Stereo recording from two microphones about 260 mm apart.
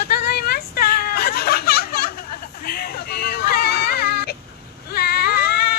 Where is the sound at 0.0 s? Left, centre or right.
Left.